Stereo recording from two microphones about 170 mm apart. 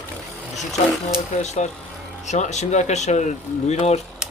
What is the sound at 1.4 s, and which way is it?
Speech, 40° left (ahead or behind).